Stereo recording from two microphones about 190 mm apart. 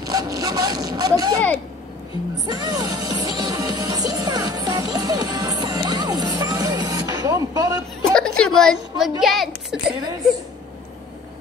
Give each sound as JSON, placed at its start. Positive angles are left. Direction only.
{"t": 0.1, "sound": "vehicle", "side_deg": -20}
{"t": 2.4, "sound": "music", "side_deg": -20}
{"t": 8.0, "sound": "a sound", "side_deg": 5}
{"t": 9.2, "sound": "a woman's voice", "side_deg": 0}